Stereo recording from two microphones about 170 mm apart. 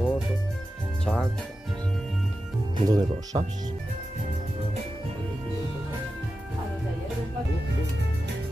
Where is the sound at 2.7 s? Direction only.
25° right (ahead or behind).